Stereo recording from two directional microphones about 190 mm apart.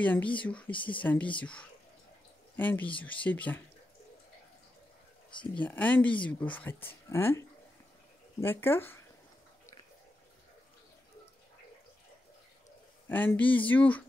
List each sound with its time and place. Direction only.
0.0 s speech: 10° left (ahead or behind)
0.7 s speech: 25° left (ahead or behind)
0.9 s speech: 5° left (ahead or behind)
5.5 s speech: 10° left (ahead or behind)
13.1 s speech: 10° left (ahead or behind)